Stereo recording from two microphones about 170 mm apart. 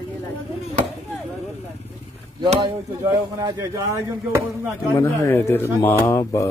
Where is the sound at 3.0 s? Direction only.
20° right (ahead or behind).